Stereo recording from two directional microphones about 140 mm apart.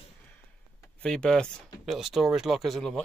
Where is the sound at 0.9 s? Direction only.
5° left (ahead or behind).